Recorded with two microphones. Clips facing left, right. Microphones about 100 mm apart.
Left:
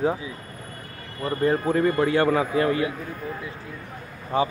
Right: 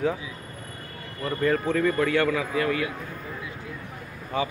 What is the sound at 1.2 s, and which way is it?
A man's voice, 30° left (ahead or behind).